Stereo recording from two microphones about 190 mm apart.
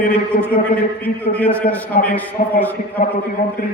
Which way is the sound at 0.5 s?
50° left (ahead or behind).